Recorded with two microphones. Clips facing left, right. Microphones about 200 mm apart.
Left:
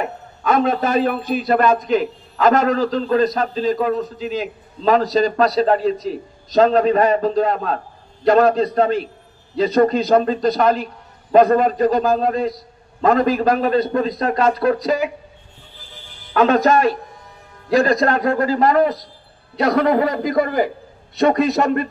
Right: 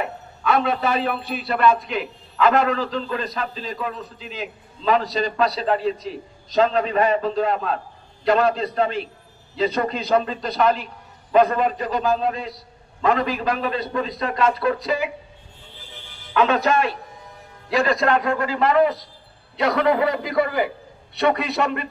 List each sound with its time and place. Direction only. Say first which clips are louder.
0.0 s a man's voice: left 3 dB; 45° left (ahead or behind)
16.3 s a man's voice: left 4 dB; 40° left (ahead or behind)